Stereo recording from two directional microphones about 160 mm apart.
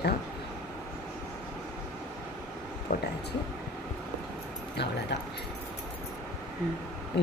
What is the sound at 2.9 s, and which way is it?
Speech, 65° left (ahead or behind).